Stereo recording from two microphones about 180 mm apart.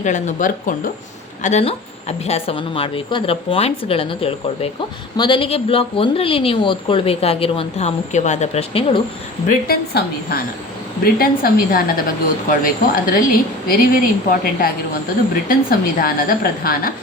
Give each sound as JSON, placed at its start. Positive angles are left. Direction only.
{"t": 0.0, "sound": "a woman's voice", "side_deg": 40}
{"t": 9.5, "sound": "a woman's voice", "side_deg": 55}
{"t": 16.0, "sound": "a woman's voice", "side_deg": 55}